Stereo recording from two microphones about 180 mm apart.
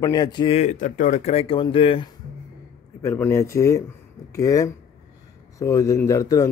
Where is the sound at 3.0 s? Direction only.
15° left (ahead or behind).